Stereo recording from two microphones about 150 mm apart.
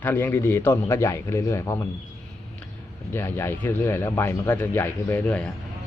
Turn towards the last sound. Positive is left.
turn(degrees=10)  # may be behind; listen again after turning